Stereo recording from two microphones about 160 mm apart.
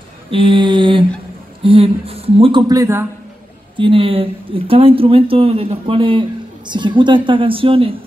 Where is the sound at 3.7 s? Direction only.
35° right (ahead or behind).